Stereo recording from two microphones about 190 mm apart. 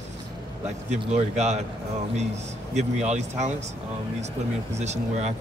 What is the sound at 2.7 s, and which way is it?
Speech, 35° right (ahead or behind).